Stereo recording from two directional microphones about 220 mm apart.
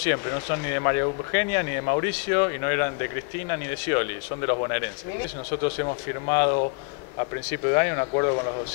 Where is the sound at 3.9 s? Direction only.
20° left (ahead or behind).